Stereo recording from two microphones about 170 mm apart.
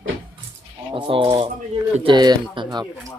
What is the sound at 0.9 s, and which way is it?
Speech, 30° right (ahead or behind).